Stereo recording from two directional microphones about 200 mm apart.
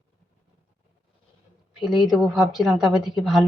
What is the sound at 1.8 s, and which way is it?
Speech, centre (ahead or behind).